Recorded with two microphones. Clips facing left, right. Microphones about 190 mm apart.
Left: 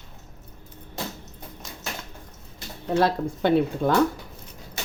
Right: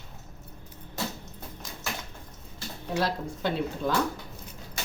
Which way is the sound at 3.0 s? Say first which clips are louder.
Left 7 dB; 60° left (ahead or behind).